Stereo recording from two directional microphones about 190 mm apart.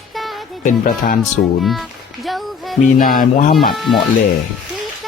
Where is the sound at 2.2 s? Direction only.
Centre (ahead or behind).